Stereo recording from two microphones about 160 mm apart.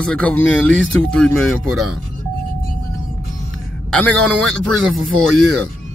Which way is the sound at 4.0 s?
5° left (ahead or behind).